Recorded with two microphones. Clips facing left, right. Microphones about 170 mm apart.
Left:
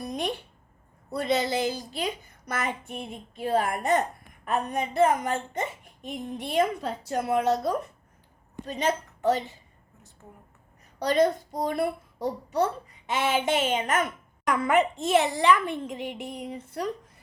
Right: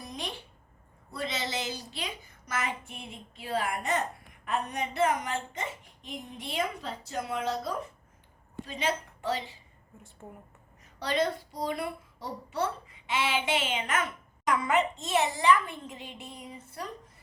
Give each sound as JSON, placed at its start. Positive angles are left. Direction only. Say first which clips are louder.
{"t": 0.0, "sound": "a sound", "louder": "left 8 dB", "side_deg": 60}
{"t": 1.2, "sound": "a woman's voice", "louder": "left 8 dB", "side_deg": 55}
{"t": 8.6, "sound": "a woman's voice", "louder": "left 5 dB", "side_deg": 50}
{"t": 11.0, "sound": "speech", "louder": "left 6 dB", "side_deg": 45}
{"t": 14.4, "sound": "a woman's voice", "louder": "left 4 dB", "side_deg": 55}